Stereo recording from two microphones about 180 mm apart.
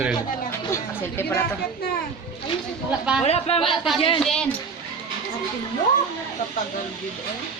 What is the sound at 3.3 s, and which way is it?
Speech, 35° left (ahead or behind).